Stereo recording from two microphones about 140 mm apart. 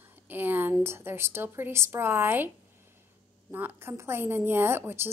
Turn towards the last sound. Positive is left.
turn(degrees=-15)  # may be behind; listen again after turning